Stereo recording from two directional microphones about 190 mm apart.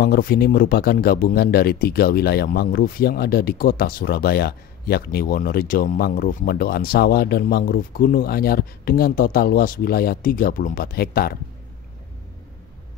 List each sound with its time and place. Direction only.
0.0 s speech: 55° left (ahead or behind)